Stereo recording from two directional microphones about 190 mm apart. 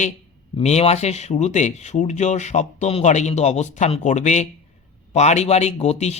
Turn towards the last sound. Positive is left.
turn(degrees=35)  # may be behind; listen again after turning